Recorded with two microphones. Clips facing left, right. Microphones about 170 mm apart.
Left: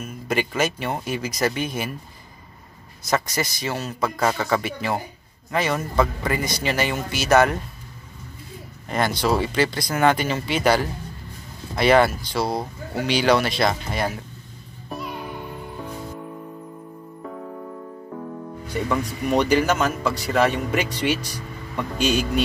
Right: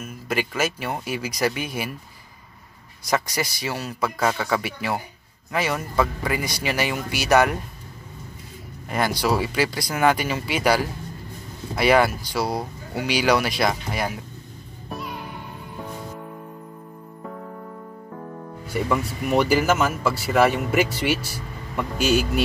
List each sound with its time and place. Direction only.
0.0 s speech: 5° right (ahead or behind)
3.0 s speech: 10° right (ahead or behind)
8.8 s speech: 10° right (ahead or behind)
19.3 s speech: 5° right (ahead or behind)